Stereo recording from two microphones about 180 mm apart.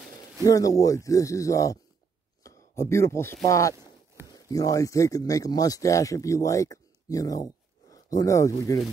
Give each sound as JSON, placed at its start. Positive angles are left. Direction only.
{"t": 0.5, "sound": "speech", "side_deg": 20}
{"t": 2.4, "sound": "a sound", "side_deg": 15}
{"t": 3.4, "sound": "speech", "side_deg": 15}